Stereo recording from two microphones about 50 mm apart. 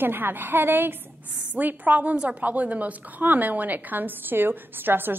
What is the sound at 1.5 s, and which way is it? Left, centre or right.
A woman's voice, right.